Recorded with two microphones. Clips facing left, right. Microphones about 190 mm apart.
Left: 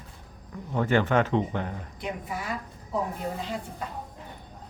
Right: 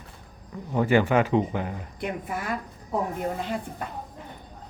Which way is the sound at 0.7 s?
10° right (ahead or behind).